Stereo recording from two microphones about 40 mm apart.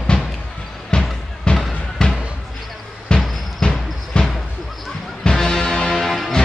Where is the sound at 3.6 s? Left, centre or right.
Left.